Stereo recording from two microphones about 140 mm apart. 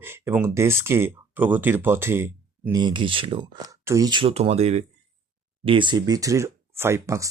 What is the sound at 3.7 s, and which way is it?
Speech, 25° right (ahead or behind).